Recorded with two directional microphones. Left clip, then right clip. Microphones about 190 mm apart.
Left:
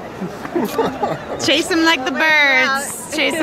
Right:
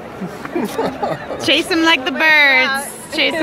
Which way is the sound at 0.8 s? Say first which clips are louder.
Even; 25° right (ahead or behind).